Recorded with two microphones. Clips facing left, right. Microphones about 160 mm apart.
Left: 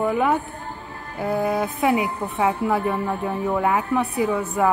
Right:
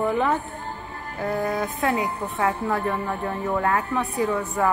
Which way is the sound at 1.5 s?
10° left (ahead or behind).